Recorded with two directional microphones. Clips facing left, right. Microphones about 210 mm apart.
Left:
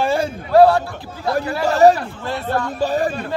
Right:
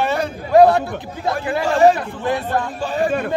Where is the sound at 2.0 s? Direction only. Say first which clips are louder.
Right 4 dB; 15° right (ahead or behind).